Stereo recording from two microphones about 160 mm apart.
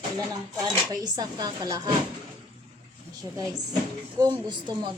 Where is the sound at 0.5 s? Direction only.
25° right (ahead or behind).